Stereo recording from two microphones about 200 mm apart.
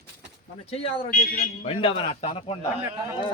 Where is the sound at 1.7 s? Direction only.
25° left (ahead or behind).